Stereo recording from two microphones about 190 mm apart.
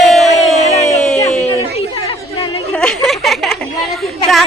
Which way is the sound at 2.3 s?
30° left (ahead or behind).